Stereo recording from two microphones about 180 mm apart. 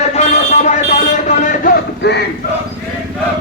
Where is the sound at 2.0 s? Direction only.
70° left (ahead or behind).